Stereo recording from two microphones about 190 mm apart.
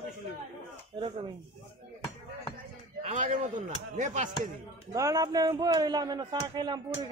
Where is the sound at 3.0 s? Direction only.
40° right (ahead or behind).